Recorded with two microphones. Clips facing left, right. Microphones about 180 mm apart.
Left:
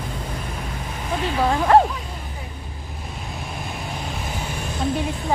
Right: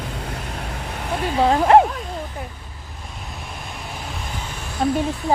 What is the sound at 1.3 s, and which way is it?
Speech, 25° right (ahead or behind).